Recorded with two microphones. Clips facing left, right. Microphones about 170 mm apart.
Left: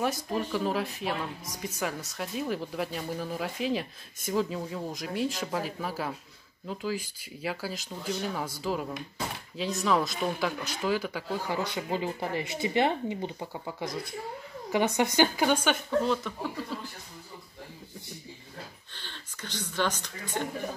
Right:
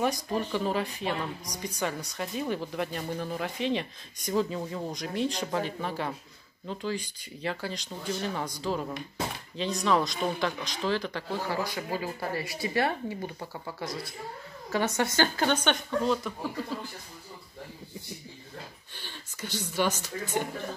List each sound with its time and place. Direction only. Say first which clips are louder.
0.0 s a woman's voice: right 1 dB; centre (ahead or behind)
11.5 s speech: left 1 dB; 20° left (ahead or behind); by 16.3 s centre (ahead or behind)
18.9 s speech: right 3 dB; 10° right (ahead or behind)